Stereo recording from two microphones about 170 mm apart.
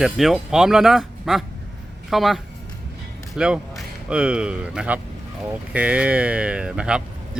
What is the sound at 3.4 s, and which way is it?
Speech, 5° right (ahead or behind).